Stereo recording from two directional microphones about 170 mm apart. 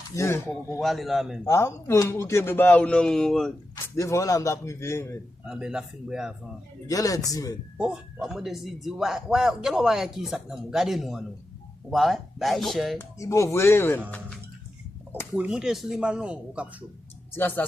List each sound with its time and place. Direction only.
0.2 s a man's voice: 15° left (ahead or behind)
0.8 s a man's voice: centre (ahead or behind)
1.5 s a man's voice: 15° left (ahead or behind)
3.9 s a man's voice: 15° left (ahead or behind)
5.5 s a man's voice: 5° right (ahead or behind)
6.8 s speech: 20° left (ahead or behind)
7.8 s a man's voice: 5° right (ahead or behind)
13.0 s a man's voice: 20° left (ahead or behind)
15.4 s a man's voice: 5° right (ahead or behind)
17.3 s a man's voice: 10° left (ahead or behind)